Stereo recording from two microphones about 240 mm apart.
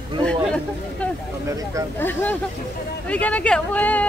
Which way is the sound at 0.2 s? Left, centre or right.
Centre.